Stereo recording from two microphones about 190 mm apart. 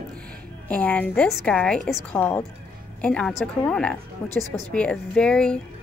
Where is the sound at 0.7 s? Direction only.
5° left (ahead or behind).